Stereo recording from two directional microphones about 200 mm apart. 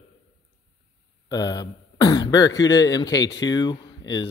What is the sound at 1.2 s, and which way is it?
Speech, 20° left (ahead or behind).